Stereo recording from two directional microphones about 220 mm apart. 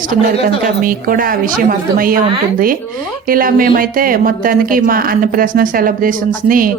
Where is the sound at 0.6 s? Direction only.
40° right (ahead or behind).